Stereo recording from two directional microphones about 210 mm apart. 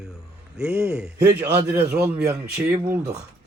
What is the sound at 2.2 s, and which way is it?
Speech, 50° right (ahead or behind).